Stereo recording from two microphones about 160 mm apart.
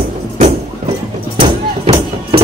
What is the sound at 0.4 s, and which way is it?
Music, 40° right (ahead or behind).